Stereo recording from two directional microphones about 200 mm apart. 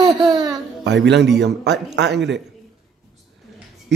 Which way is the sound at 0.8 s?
60° right (ahead or behind).